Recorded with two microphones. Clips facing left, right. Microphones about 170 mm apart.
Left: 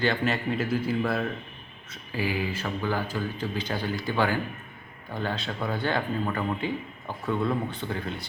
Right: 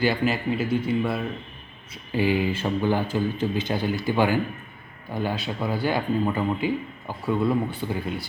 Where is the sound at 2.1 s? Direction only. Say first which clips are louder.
Right 6 dB; 25° right (ahead or behind); by 8.2 s 10° right (ahead or behind).